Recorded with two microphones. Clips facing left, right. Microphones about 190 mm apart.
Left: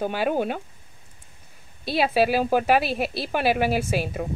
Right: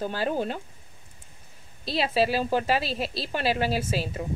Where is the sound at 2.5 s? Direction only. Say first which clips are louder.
Left 5 dB; 60° left (ahead or behind).